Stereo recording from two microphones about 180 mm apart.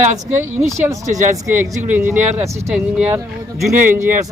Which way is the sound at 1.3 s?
15° right (ahead or behind).